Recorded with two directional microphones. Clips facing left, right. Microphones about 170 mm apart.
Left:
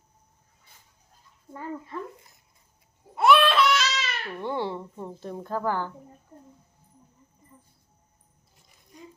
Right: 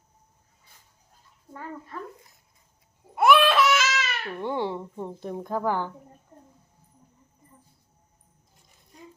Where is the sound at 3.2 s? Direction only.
Centre (ahead or behind).